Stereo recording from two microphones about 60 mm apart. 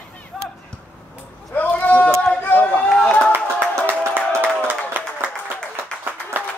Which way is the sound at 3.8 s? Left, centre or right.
Right.